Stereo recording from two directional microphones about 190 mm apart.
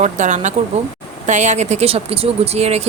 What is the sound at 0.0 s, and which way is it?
A woman's voice, 40° right (ahead or behind).